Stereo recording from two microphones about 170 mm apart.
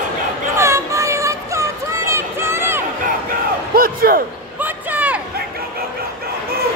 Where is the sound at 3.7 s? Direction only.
60° right (ahead or behind).